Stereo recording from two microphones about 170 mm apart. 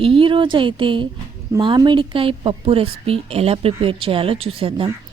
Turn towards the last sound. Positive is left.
turn(degrees=-35)  # may be behind; listen again after turning